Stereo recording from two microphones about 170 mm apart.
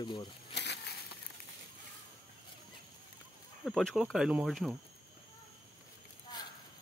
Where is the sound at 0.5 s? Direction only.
90° left.